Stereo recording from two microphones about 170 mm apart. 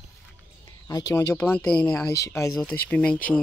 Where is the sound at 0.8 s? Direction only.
20° left (ahead or behind).